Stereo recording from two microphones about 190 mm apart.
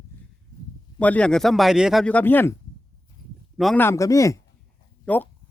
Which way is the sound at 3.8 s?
15° left (ahead or behind).